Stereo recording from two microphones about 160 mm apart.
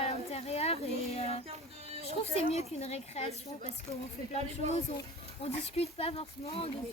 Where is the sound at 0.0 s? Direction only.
40° left (ahead or behind).